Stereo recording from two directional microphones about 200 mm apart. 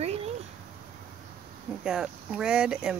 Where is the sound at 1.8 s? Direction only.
Centre (ahead or behind).